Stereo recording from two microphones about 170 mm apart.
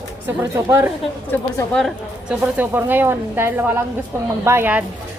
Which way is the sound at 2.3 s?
10° right (ahead or behind).